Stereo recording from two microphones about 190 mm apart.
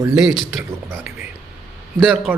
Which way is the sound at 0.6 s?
15° right (ahead or behind).